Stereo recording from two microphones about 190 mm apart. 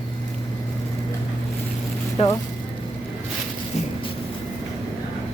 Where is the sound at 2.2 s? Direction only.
30° left (ahead or behind).